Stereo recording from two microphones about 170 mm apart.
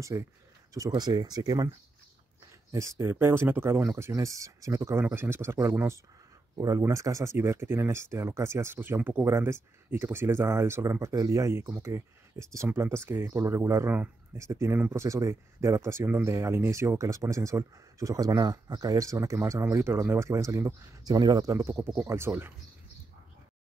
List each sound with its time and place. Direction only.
0.1 s speech: 15° right (ahead or behind)
2.7 s speech: 15° right (ahead or behind)